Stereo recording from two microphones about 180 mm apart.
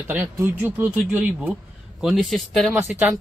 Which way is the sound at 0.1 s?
10° right (ahead or behind).